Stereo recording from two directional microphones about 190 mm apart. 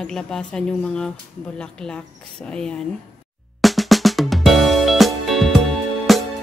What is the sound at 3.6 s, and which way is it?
Music, centre (ahead or behind).